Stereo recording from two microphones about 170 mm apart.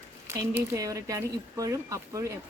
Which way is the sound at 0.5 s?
15° right (ahead or behind).